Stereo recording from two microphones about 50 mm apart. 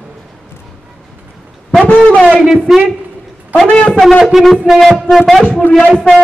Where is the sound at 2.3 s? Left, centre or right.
Centre.